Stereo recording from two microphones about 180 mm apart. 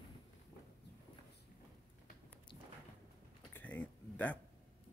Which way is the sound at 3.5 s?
10° left (ahead or behind).